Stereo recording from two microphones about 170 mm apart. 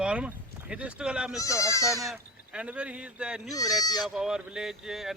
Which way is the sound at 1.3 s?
20° left (ahead or behind).